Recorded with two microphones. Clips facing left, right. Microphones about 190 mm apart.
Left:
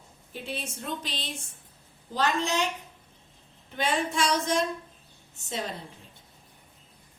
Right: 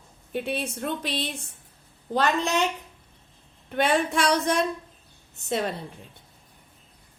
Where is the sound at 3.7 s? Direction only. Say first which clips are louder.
Right 5 dB; 60° right (ahead or behind).